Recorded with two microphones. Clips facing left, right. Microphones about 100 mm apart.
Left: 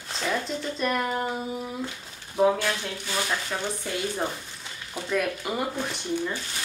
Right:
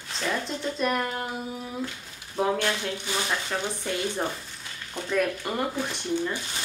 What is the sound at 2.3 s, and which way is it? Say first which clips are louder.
Speech: left 3 dB; 5° left (ahead or behind).